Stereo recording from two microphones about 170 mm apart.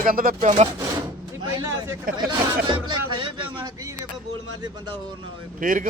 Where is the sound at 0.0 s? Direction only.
55° right (ahead or behind).